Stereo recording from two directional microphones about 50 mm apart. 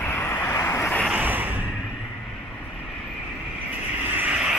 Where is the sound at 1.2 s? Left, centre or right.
Right.